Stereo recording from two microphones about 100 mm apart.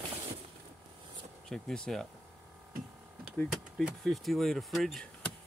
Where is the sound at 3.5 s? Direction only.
5° right (ahead or behind).